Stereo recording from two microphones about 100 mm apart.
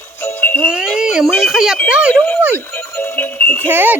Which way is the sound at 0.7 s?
5° right (ahead or behind).